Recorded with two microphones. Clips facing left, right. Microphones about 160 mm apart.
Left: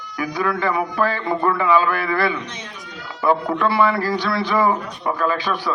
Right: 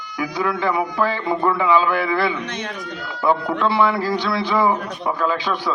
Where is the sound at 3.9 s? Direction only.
15° right (ahead or behind).